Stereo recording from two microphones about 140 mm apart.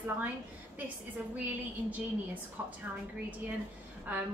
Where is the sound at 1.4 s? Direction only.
10° right (ahead or behind).